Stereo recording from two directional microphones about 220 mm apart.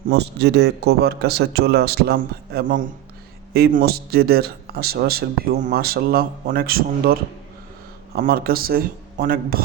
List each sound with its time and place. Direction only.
0.1 s a man's voice: 50° right (ahead or behind)